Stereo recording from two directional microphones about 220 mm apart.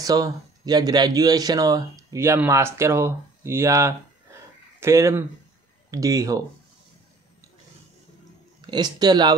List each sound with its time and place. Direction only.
0.0 s speech: 15° right (ahead or behind)
8.5 s speech: 20° right (ahead or behind)